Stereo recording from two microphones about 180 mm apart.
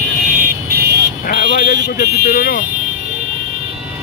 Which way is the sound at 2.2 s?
55° left (ahead or behind).